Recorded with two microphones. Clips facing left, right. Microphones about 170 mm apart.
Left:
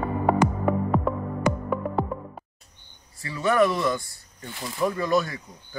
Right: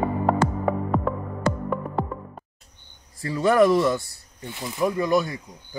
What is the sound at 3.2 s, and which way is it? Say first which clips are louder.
Speech: right 3 dB; 35° right (ahead or behind).